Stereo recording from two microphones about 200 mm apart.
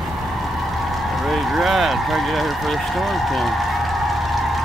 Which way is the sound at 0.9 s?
Centre (ahead or behind).